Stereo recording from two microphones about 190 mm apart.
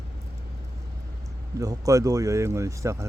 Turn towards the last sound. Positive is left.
turn(degrees=-15)  # may be behind; listen again after turning